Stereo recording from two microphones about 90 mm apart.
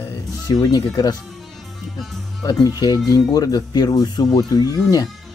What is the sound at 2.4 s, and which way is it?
Speech, 45° left (ahead or behind).